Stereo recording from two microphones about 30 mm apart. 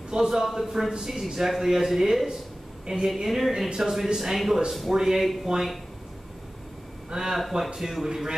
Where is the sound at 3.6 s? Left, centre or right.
Centre.